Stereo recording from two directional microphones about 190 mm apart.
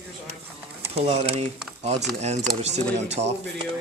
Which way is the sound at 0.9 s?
35° right (ahead or behind).